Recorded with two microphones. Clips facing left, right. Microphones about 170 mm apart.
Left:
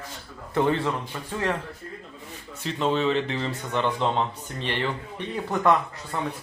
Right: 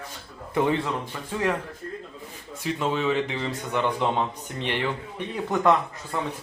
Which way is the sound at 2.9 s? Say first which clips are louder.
Left 2 dB; 10° right (ahead or behind).